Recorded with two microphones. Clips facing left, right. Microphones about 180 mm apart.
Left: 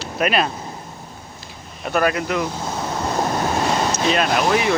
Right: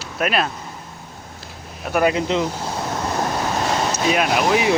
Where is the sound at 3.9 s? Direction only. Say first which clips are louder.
Even; 10° right (ahead or behind).